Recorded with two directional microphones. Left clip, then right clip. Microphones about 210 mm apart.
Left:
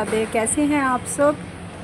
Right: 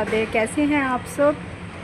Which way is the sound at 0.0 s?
Centre (ahead or behind).